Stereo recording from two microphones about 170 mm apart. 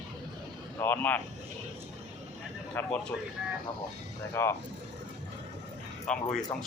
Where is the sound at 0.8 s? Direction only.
10° left (ahead or behind).